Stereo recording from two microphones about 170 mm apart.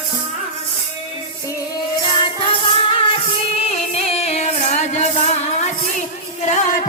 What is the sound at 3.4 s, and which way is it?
Music, 35° left (ahead or behind).